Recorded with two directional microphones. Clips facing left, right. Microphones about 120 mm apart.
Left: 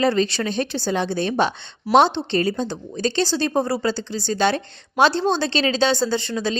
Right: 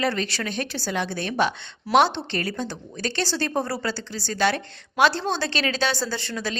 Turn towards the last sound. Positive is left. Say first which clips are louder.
# left 6 dB
turn(degrees=20)  # may be behind; listen again after turning